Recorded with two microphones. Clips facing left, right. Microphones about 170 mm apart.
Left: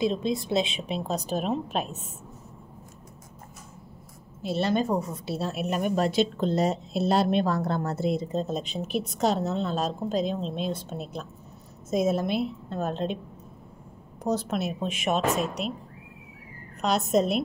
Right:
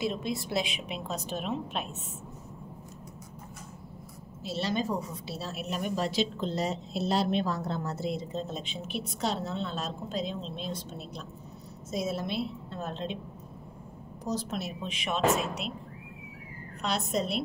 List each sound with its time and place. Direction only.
0.0 s a woman's voice: 20° left (ahead or behind); by 2.0 s 40° left (ahead or behind)
4.4 s a woman's voice: 55° left (ahead or behind)
14.2 s a woman's voice: 60° left (ahead or behind)
15.2 s a woman's voice: centre (ahead or behind)
17.1 s a woman's voice: 45° left (ahead or behind)